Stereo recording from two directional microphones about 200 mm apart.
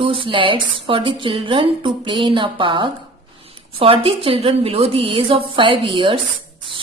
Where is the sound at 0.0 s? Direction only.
25° right (ahead or behind).